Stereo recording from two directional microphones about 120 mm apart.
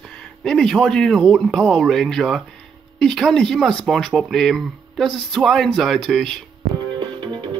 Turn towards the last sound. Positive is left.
turn(degrees=-40)  # may be behind; listen again after turning